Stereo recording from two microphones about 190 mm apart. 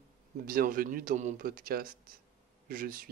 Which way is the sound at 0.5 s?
50° right (ahead or behind).